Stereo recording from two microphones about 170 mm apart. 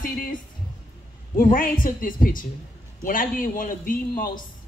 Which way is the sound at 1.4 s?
55° left (ahead or behind).